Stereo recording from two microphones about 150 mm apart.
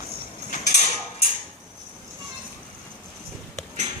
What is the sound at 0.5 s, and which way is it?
Mechanisms, 50° left (ahead or behind).